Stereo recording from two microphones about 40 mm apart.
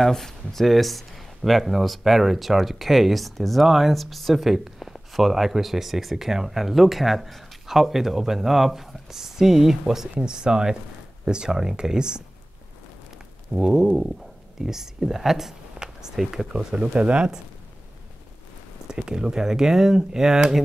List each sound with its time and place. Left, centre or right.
0.1 s speech: centre
3.6 s speech: centre
3.9 s speech: centre
13.5 s speech: centre
16.5 s speech: right
18.9 s speech: centre